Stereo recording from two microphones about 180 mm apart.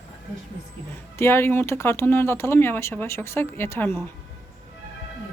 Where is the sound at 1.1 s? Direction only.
15° left (ahead or behind).